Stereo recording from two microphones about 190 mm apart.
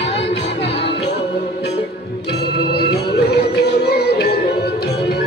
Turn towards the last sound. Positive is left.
turn(degrees=60)  # may be behind; listen again after turning